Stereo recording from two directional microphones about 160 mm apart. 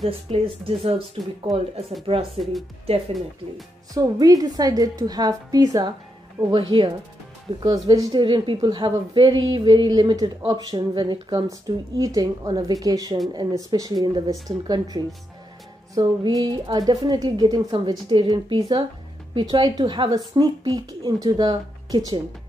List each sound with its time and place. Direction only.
0.3 s speech: 35° right (ahead or behind)
1.5 s speech: centre (ahead or behind)
2.0 s speech: 35° right (ahead or behind)
3.9 s a woman's voice: 20° right (ahead or behind)